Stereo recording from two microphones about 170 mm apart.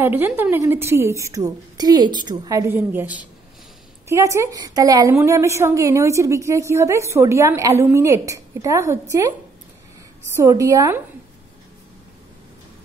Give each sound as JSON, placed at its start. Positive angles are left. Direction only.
{"t": 0.0, "sound": "a woman's voice", "side_deg": -10}
{"t": 10.3, "sound": "a woman's voice", "side_deg": -20}